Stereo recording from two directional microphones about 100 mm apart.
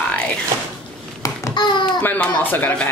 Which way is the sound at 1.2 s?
35° left (ahead or behind).